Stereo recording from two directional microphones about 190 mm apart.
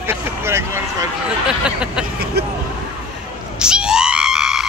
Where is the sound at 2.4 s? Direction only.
60° right (ahead or behind).